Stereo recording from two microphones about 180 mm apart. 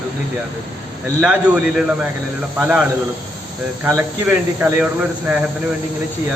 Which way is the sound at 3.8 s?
10° right (ahead or behind).